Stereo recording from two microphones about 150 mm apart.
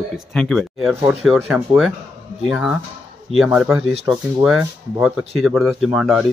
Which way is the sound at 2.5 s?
5° right (ahead or behind).